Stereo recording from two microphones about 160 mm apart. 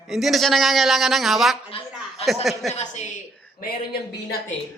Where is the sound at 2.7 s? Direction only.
45° left (ahead or behind).